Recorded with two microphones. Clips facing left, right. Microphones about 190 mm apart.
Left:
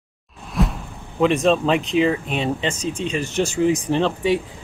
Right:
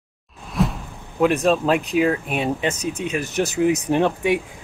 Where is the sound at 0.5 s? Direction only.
Centre (ahead or behind).